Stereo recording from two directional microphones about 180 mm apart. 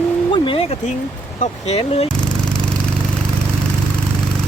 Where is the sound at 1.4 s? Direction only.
35° left (ahead or behind).